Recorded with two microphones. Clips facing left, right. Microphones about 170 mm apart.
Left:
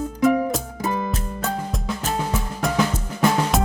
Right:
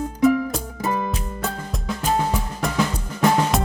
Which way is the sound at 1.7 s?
Centre (ahead or behind).